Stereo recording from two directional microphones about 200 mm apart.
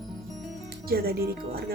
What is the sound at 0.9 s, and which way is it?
Speech, 50° right (ahead or behind).